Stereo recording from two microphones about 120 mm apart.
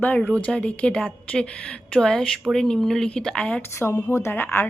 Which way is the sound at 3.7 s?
20° left (ahead or behind).